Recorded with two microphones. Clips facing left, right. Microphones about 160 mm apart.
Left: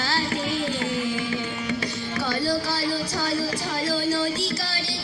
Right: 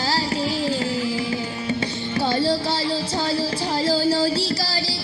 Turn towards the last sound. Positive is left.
turn(degrees=-35)  # may be behind; listen again after turning